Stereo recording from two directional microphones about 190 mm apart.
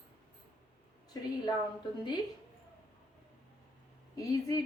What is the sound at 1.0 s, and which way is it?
Speech, 20° left (ahead or behind).